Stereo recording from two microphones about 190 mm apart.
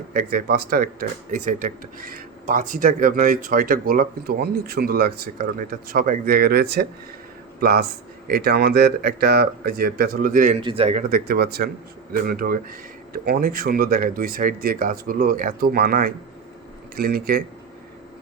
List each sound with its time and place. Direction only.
0.1 s speech: 50° right (ahead or behind)
10.6 s speech: 30° right (ahead or behind)
11.1 s speech: 55° right (ahead or behind)